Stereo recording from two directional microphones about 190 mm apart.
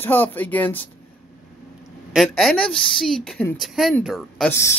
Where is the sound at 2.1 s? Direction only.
5° left (ahead or behind).